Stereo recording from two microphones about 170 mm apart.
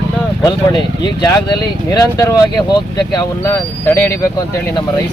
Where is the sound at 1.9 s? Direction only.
20° left (ahead or behind).